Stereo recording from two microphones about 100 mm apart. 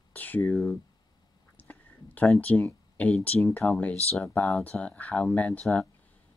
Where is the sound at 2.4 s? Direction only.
15° left (ahead or behind).